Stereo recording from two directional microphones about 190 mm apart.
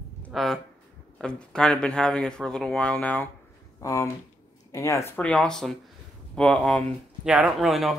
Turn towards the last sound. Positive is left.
turn(degrees=0)  # may be behind; listen again after turning